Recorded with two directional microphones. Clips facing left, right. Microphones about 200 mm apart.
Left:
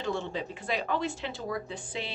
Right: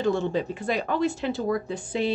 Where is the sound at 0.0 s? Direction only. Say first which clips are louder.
Right 8 dB; 45° right (ahead or behind).